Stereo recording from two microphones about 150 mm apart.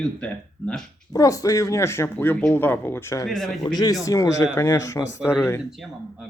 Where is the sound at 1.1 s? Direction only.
25° left (ahead or behind).